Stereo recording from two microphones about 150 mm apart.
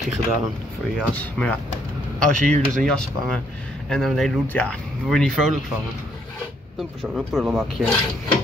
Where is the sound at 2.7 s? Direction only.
5° left (ahead or behind).